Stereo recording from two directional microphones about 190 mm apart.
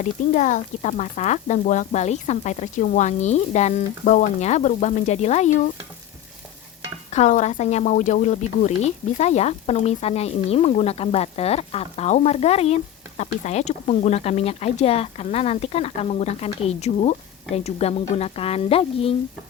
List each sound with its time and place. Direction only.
0.0 s speech: 40° left (ahead or behind)
7.1 s speech: 40° left (ahead or behind)